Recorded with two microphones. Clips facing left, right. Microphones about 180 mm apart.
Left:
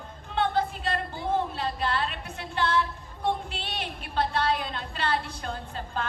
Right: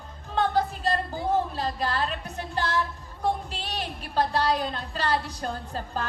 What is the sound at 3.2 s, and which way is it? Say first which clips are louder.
A woman's voice: right 1 dB; 40° right (ahead or behind).